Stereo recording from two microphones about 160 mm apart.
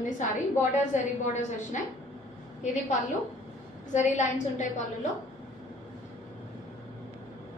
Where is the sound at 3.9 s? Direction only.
50° left (ahead or behind).